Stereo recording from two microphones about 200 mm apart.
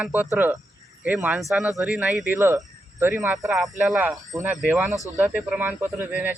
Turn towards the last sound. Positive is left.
turn(degrees=-10)  # may be behind; listen again after turning